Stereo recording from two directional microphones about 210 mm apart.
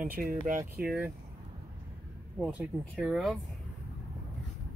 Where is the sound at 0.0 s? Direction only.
40° right (ahead or behind).